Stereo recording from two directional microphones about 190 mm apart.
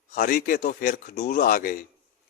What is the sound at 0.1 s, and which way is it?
Speech, 45° left (ahead or behind).